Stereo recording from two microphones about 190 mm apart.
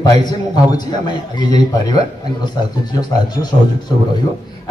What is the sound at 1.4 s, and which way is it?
Speech, 20° left (ahead or behind).